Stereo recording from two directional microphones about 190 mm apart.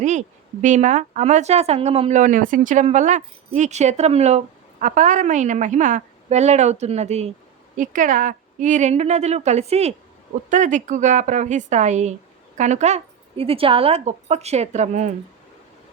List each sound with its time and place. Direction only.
0.0 s speech: 40° right (ahead or behind)